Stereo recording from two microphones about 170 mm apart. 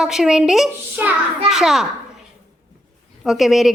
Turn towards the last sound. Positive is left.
turn(degrees=0)  # may be behind; listen again after turning